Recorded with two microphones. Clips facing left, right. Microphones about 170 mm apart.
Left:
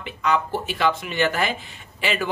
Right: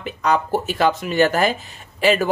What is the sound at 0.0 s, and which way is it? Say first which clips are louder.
Speech: right 3 dB; 40° right (ahead or behind).